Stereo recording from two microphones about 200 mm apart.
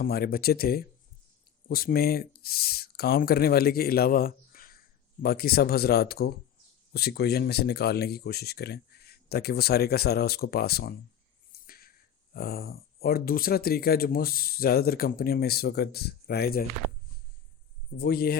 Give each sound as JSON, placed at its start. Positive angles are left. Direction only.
{"t": 0.0, "sound": "speech", "side_deg": 50}
{"t": 11.6, "sound": "a sound", "side_deg": 45}
{"t": 12.3, "sound": "speech", "side_deg": 50}
{"t": 17.9, "sound": "speech", "side_deg": 50}